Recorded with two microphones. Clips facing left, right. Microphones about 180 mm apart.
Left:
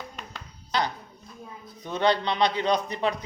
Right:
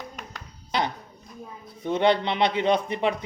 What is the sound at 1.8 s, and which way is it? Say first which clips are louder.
Speech: right 3 dB; 25° right (ahead or behind).